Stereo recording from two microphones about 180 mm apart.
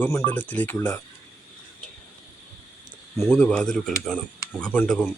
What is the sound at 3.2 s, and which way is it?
Speech, 10° left (ahead or behind).